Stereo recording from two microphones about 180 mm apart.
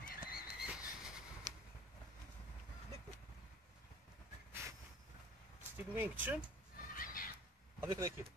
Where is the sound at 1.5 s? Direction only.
25° right (ahead or behind).